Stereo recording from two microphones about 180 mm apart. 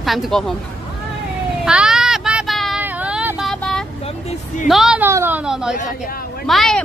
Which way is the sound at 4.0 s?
35° left (ahead or behind).